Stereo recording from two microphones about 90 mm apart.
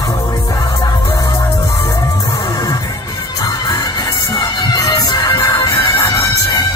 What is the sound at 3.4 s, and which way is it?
Music, 40° left (ahead or behind).